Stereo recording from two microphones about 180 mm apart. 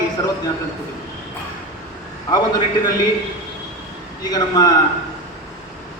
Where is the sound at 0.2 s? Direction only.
25° left (ahead or behind).